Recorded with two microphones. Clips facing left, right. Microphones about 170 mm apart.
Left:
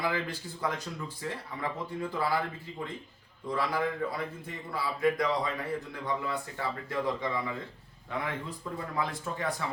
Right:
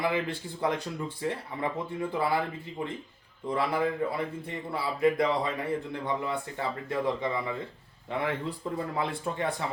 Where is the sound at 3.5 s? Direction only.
25° right (ahead or behind).